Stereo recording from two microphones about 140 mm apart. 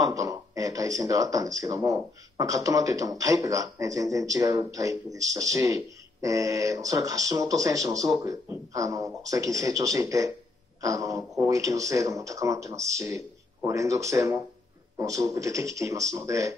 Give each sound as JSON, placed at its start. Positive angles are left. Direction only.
{"t": 0.1, "sound": "speech", "side_deg": -25}